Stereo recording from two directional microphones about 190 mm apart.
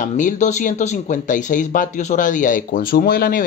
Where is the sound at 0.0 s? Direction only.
40° left (ahead or behind).